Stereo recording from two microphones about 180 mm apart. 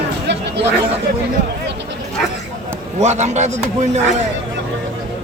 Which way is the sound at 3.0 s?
40° right (ahead or behind).